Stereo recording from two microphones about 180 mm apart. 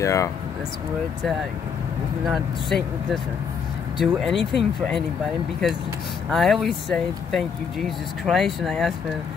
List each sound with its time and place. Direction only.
0.0 s speech: 15° left (ahead or behind)
2.2 s speech: centre (ahead or behind)
6.3 s speech: centre (ahead or behind)